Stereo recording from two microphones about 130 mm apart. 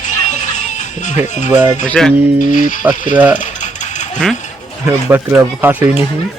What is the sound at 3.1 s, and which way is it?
Speech, 10° right (ahead or behind).